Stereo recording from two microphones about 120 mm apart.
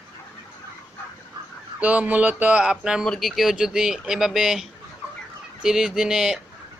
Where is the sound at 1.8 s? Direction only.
10° right (ahead or behind).